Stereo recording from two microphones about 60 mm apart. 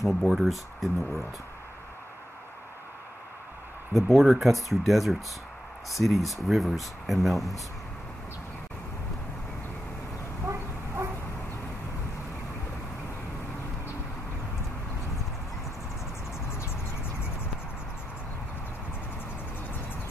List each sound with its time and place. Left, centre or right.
0.0 s speech: centre
3.9 s speech: centre
10.4 s dog: right